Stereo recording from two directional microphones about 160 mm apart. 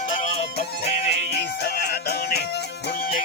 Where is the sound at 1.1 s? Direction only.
90° left.